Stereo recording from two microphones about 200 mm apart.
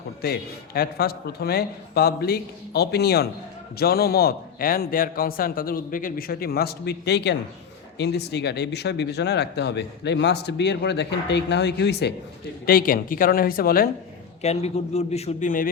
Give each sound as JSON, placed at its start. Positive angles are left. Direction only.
{"t": 0.2, "sound": "a man's voice", "side_deg": 50}
{"t": 12.6, "sound": "a man's voice", "side_deg": 45}
{"t": 14.4, "sound": "a man's voice", "side_deg": 30}